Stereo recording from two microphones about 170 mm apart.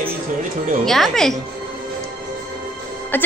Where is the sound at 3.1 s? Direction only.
10° left (ahead or behind).